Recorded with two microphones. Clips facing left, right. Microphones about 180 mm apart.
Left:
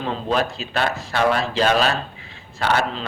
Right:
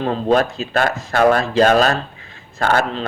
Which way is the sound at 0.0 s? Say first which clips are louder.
Right 6 dB; 45° right (ahead or behind).